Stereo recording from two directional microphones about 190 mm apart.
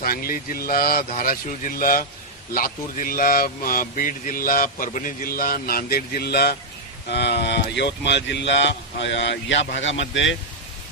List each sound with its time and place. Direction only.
0.0 s speech: 50° left (ahead or behind); by 10.3 s 75° left (ahead or behind)